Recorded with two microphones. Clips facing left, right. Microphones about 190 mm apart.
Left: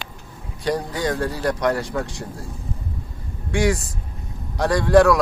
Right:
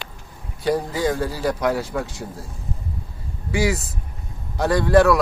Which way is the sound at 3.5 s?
5° right (ahead or behind).